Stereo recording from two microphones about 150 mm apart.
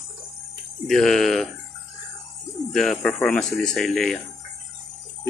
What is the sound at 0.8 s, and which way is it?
Speech, centre (ahead or behind).